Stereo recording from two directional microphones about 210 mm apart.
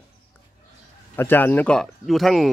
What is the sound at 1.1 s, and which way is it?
Speech, 10° left (ahead or behind).